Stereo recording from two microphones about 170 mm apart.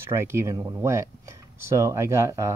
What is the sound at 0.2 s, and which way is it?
Speech, 15° right (ahead or behind).